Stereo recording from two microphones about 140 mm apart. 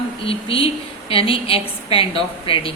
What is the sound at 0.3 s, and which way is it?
A woman's voice, 40° left (ahead or behind).